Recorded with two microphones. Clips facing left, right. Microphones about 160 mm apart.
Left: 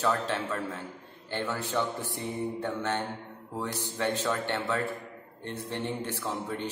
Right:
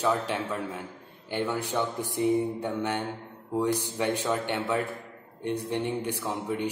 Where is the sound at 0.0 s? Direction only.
15° right (ahead or behind).